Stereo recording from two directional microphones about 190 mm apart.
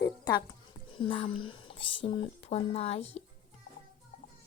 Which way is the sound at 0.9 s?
25° left (ahead or behind).